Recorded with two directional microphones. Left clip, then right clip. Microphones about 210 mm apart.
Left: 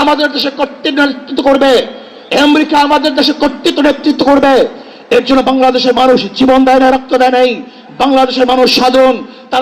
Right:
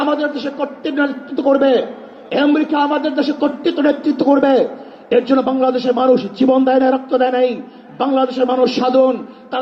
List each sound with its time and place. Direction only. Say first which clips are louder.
0.0 s a man's voice: left 8 dB; 20° left (ahead or behind)